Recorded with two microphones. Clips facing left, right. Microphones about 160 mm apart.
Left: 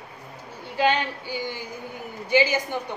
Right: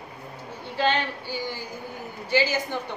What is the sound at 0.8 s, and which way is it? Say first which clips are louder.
A woman's voice: left 2 dB; 15° left (ahead or behind).